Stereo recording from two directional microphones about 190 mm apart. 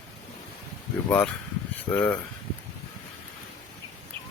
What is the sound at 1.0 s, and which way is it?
Speech, 10° left (ahead or behind).